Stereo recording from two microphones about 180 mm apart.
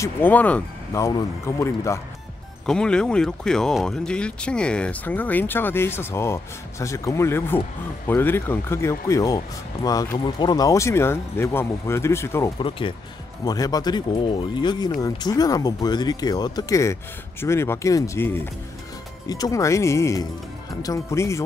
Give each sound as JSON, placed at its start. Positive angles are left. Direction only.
{"t": 0.0, "sound": "speech", "side_deg": 10}
{"t": 2.6, "sound": "speech", "side_deg": 5}
{"t": 12.5, "sound": "speech", "side_deg": 30}